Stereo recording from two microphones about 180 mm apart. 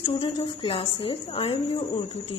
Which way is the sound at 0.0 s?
30° left (ahead or behind).